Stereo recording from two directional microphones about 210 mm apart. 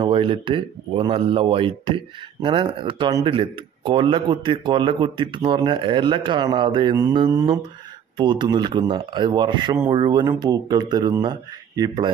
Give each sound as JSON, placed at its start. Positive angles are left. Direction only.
{"t": 0.0, "sound": "a man's voice", "side_deg": -25}